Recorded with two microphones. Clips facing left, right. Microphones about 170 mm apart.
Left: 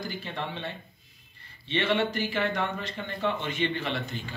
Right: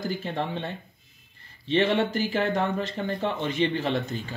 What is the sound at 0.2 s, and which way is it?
Speech, 45° right (ahead or behind).